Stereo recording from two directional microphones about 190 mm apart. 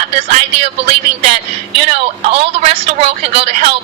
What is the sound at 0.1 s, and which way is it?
Speech, 40° right (ahead or behind).